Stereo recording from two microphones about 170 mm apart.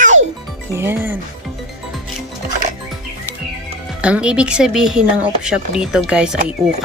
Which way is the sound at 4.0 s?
5° right (ahead or behind).